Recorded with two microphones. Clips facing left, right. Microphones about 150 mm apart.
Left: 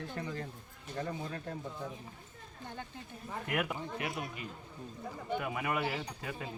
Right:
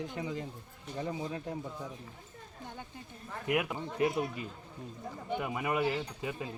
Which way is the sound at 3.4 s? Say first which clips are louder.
Right 4 dB; 15° right (ahead or behind).